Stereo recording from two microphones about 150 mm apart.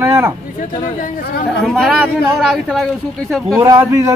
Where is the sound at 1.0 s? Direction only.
90° left.